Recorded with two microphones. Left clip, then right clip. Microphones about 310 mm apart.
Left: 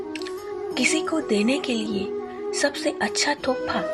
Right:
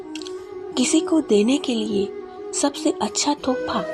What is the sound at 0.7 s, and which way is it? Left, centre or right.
A woman's voice, centre.